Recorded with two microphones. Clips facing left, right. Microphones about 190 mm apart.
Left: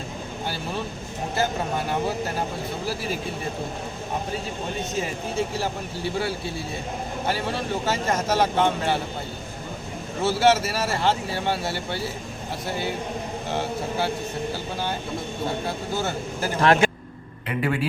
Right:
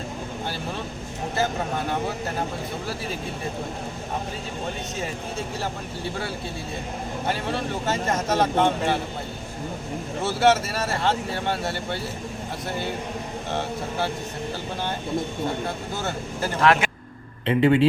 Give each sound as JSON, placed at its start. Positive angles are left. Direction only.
{"t": 7.9, "sound": "speech", "side_deg": 0}
{"t": 10.2, "sound": "speech", "side_deg": 5}
{"t": 13.5, "sound": "speech", "side_deg": 10}
{"t": 15.6, "sound": "speech", "side_deg": 5}
{"t": 16.6, "sound": "speech", "side_deg": 30}
{"t": 17.4, "sound": "speech", "side_deg": -25}